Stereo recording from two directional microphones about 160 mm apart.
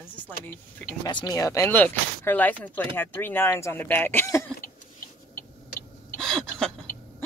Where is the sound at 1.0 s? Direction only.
25° left (ahead or behind).